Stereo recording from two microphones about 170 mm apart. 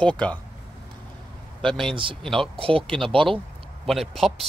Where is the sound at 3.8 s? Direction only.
Centre (ahead or behind).